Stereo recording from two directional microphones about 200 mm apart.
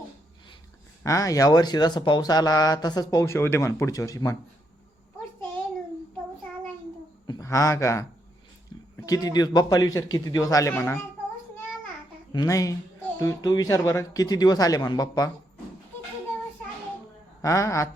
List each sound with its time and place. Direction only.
1.0 s speech: 15° left (ahead or behind)
7.3 s a man's voice: 15° left (ahead or behind)
9.0 s speech: 20° left (ahead or behind)
12.3 s speech: 20° left (ahead or behind)
17.4 s speech: 15° left (ahead or behind)